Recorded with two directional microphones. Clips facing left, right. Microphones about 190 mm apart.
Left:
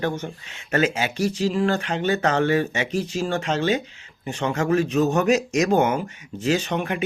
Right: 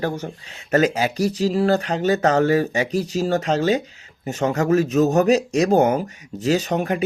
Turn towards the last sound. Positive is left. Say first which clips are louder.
# right 3 dB
turn(degrees=-40)  # may be behind; listen again after turning